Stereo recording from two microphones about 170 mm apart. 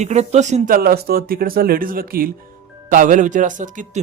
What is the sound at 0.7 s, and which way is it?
Speech, 65° right (ahead or behind).